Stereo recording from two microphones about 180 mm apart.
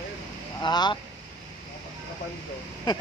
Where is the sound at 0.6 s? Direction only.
25° left (ahead or behind).